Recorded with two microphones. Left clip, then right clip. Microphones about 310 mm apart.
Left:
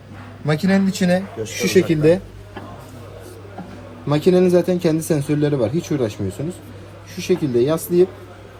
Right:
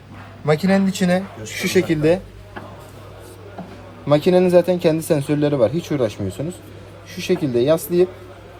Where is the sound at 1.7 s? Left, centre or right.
Right.